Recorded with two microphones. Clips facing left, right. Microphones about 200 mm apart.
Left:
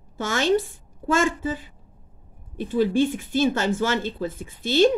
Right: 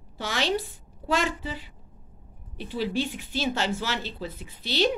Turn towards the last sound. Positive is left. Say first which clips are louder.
# left 7 dB
turn(degrees=50)  # may be behind; listen again after turning